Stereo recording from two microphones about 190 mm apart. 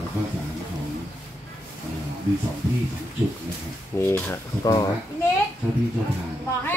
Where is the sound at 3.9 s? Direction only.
10° left (ahead or behind).